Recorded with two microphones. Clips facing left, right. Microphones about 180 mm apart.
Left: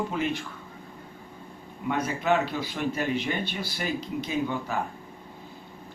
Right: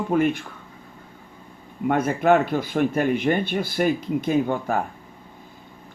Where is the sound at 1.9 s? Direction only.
55° right (ahead or behind).